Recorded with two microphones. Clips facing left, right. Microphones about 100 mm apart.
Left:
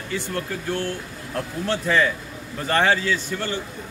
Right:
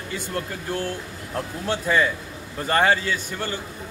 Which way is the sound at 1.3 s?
15° right (ahead or behind).